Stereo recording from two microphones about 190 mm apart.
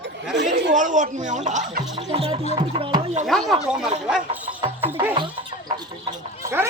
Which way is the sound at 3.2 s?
Centre (ahead or behind).